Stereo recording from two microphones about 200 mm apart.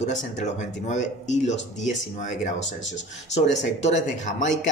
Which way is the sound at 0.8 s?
35° left (ahead or behind).